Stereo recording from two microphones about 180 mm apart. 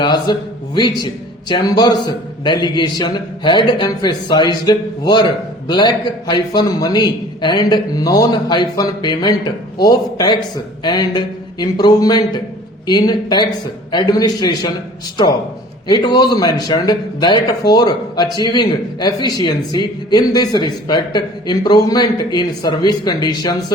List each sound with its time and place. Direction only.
0.0 s a man's voice: 25° left (ahead or behind)
15.9 s a man's voice: 25° left (ahead or behind)